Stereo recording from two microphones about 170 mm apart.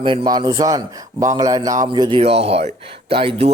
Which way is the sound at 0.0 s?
30° right (ahead or behind).